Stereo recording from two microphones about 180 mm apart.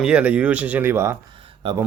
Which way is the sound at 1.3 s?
30° right (ahead or behind).